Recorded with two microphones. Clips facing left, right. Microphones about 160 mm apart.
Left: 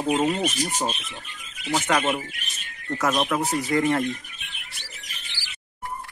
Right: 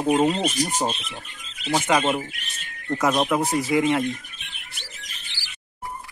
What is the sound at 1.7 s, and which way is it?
Speech, 15° right (ahead or behind).